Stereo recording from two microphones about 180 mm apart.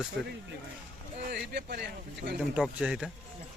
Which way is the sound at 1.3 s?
60° right (ahead or behind).